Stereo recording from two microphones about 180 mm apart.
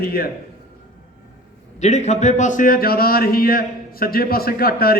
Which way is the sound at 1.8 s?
40° left (ahead or behind).